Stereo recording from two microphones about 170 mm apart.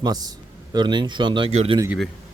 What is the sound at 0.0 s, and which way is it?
Speech, 20° right (ahead or behind).